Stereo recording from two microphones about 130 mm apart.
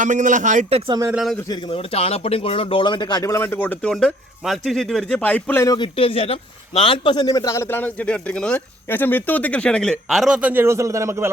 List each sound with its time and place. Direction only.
0.0 s speech: 75° right (ahead or behind)
1.1 s speech: centre (ahead or behind)
1.7 s speech: 45° left (ahead or behind); by 3.8 s 15° left (ahead or behind)
3.8 s speech: 5° left (ahead or behind)
5.6 s speech: 30° left (ahead or behind)
6.0 s a man's voice: 45° left (ahead or behind); by 11.3 s 20° right (ahead or behind)